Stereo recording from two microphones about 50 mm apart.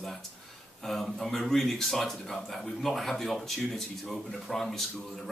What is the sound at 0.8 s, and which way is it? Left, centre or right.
Speech, centre.